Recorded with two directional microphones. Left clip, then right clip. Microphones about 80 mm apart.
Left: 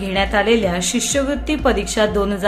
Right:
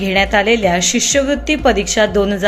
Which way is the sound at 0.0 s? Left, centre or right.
Right.